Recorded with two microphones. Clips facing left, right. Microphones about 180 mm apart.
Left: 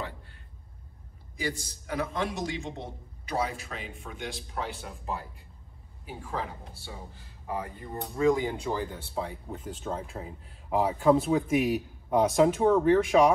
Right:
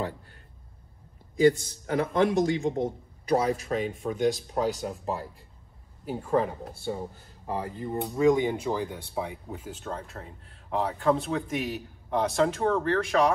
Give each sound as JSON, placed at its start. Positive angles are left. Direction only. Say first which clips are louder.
{"t": 1.6, "sound": "speech", "louder": "right 5 dB", "side_deg": -55}
{"t": 6.0, "sound": "speech", "louder": "right 9 dB", "side_deg": -45}
{"t": 7.4, "sound": "speech", "louder": "right 3 dB", "side_deg": -30}
{"t": 9.5, "sound": "speech", "louder": "left 1 dB", "side_deg": 0}